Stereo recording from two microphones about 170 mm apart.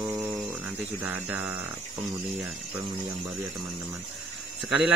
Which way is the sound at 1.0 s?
10° right (ahead or behind).